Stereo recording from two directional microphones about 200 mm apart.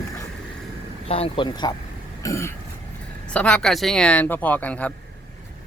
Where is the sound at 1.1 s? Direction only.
25° left (ahead or behind); by 4.9 s 5° left (ahead or behind).